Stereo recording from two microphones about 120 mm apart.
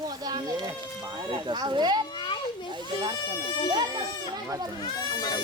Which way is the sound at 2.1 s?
40° left (ahead or behind).